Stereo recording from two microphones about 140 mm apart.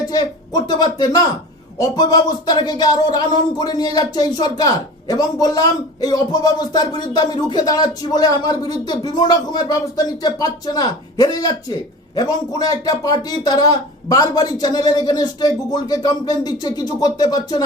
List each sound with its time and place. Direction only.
0.1 s speech: 30° left (ahead or behind)